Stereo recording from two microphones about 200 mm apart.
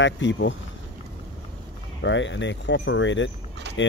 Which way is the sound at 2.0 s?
65° left (ahead or behind).